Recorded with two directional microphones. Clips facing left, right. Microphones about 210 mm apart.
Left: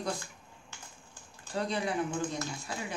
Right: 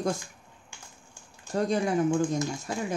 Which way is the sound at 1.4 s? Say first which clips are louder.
Right 6 dB; 45° right (ahead or behind).